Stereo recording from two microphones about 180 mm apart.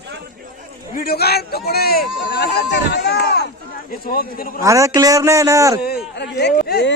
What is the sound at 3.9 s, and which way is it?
Speech, 55° left (ahead or behind).